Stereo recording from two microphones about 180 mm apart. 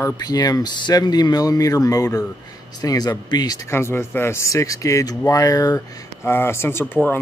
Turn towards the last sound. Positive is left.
turn(degrees=10)  # may be behind; listen again after turning